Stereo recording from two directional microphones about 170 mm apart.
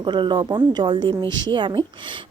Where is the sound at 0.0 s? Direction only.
30° right (ahead or behind).